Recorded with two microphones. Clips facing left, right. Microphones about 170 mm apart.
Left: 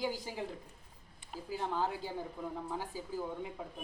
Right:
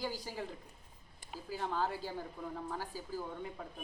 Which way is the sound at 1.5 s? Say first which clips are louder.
Left 1 dB; 15° left (ahead or behind).